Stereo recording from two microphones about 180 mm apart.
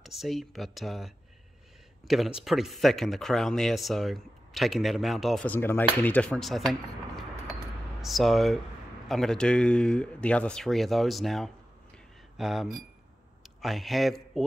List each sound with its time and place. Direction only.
0.0 s speech: centre (ahead or behind)